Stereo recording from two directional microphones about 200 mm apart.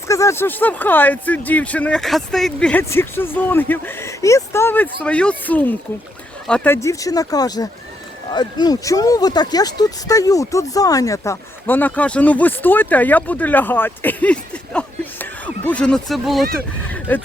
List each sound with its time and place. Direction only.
0.1 s speech: 15° left (ahead or behind)